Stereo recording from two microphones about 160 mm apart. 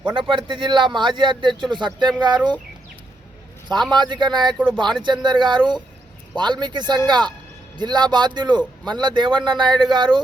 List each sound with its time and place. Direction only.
0.0 s speech: 30° right (ahead or behind)
3.9 s speech: 30° right (ahead or behind)